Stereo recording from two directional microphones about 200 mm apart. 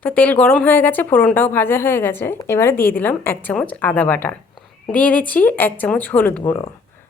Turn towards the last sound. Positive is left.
turn(degrees=10)  # may be behind; listen again after turning